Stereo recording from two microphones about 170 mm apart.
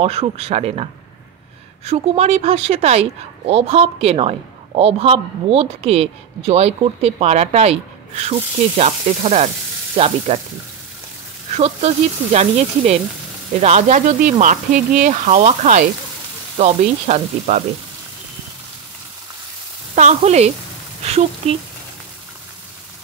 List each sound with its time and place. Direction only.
0.0 s a woman's voice: 35° right (ahead or behind)
1.9 s a woman's voice: 40° right (ahead or behind)
11.5 s a woman's voice: 40° right (ahead or behind)
20.2 s a woman's voice: 40° right (ahead or behind)